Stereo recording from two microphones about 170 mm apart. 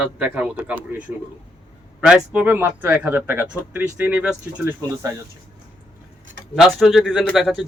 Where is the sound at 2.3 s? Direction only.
10° right (ahead or behind).